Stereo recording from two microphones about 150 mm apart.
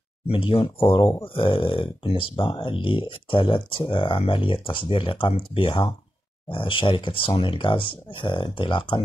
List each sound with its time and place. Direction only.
0.3 s speech: 35° left (ahead or behind)